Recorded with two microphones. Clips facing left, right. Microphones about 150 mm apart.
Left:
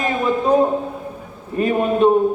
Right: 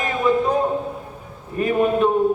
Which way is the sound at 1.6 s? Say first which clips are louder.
Left 1 dB; 30° left (ahead or behind).